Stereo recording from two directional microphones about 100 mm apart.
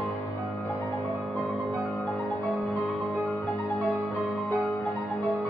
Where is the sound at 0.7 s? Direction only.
30° left (ahead or behind).